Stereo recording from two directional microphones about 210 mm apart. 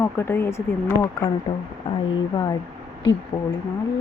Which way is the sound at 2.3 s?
20° left (ahead or behind).